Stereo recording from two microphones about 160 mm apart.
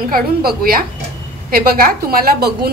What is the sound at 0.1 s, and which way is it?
A woman's voice, 70° right (ahead or behind).